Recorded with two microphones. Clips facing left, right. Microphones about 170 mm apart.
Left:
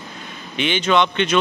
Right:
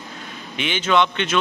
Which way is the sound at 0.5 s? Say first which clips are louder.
Left 2 dB; 5° right (ahead or behind).